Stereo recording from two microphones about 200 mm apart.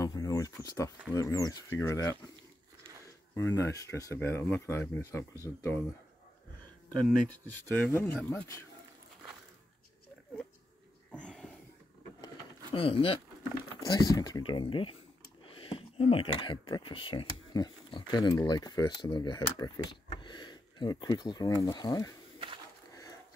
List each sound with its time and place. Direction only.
0.0 s a sound: 15° left (ahead or behind)
1.1 s speech: 15° left (ahead or behind)
3.3 s speech: 15° left (ahead or behind)
7.4 s speech: 10° left (ahead or behind)
11.1 s wheeze: 5° left (ahead or behind)
12.7 s speech: 25° left (ahead or behind)
20.1 s a sound: 25° left (ahead or behind)
21.6 s speech: 20° left (ahead or behind)